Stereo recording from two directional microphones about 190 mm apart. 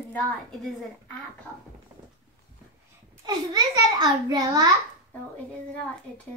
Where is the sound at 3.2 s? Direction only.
20° right (ahead or behind).